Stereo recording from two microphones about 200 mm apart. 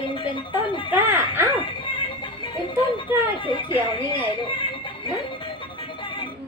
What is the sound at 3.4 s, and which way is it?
Speech, 25° left (ahead or behind).